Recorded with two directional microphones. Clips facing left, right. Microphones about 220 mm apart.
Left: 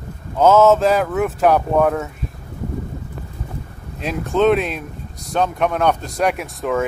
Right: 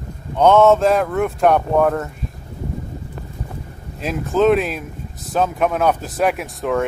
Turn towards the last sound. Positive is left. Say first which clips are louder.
# even
turn(degrees=0)  # may be behind; listen again after turning